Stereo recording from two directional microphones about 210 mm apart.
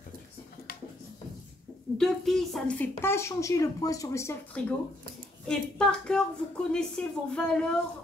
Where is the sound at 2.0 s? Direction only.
Centre (ahead or behind).